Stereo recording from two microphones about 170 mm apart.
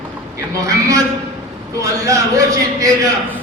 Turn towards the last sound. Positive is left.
turn(degrees=-20)  # may be behind; listen again after turning